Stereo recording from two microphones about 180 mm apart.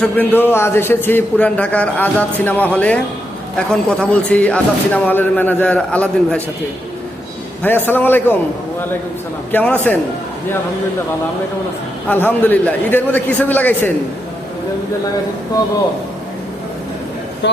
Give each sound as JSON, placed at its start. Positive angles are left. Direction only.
{"t": 0.0, "sound": "a man's voice", "side_deg": 10}
{"t": 4.0, "sound": "a man's voice", "side_deg": 5}
{"t": 7.6, "sound": "a man's voice", "side_deg": 10}
{"t": 9.5, "sound": "a man's voice", "side_deg": 10}
{"t": 12.0, "sound": "a man's voice", "side_deg": 10}
{"t": 17.4, "sound": "speech", "side_deg": 75}